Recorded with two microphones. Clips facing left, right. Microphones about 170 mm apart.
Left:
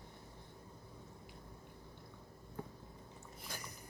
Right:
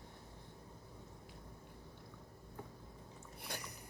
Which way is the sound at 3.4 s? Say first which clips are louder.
Right 2 dB; 65° right (ahead or behind).